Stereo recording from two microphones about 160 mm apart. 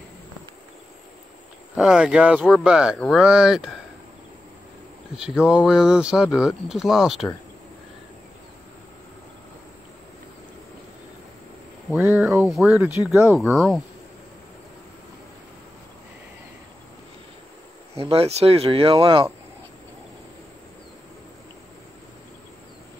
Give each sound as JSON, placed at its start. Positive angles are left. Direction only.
{"t": 1.8, "sound": "speech", "side_deg": -5}
{"t": 5.1, "sound": "speech", "side_deg": -5}
{"t": 12.2, "sound": "speech", "side_deg": 0}
{"t": 12.7, "sound": "speech", "side_deg": -15}
{"t": 13.3, "sound": "speech", "side_deg": 0}
{"t": 18.0, "sound": "speech", "side_deg": -35}